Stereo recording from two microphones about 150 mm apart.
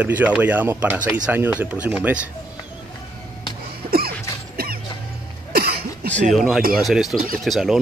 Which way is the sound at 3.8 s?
85° right.